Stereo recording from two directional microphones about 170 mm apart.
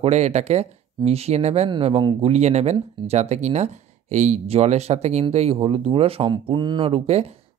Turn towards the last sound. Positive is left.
turn(degrees=-35)  # may be behind; listen again after turning